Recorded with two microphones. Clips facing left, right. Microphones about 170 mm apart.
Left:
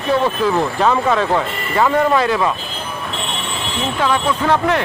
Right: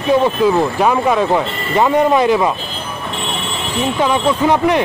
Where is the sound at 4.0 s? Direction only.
15° right (ahead or behind).